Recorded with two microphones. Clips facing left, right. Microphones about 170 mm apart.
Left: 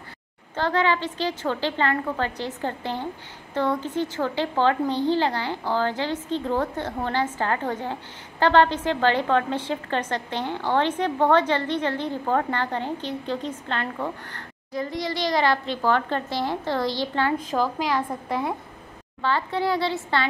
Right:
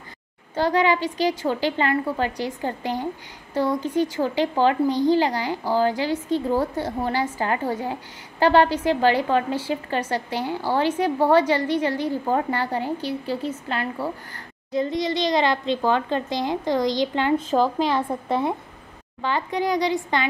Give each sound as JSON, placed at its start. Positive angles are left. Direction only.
{"t": 0.6, "sound": "a woman's voice", "side_deg": -10}
{"t": 14.7, "sound": "a woman's voice", "side_deg": -20}
{"t": 17.5, "sound": "a woman's voice", "side_deg": -30}